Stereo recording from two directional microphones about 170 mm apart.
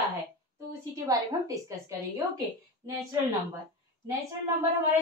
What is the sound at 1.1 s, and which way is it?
Speech, 20° right (ahead or behind).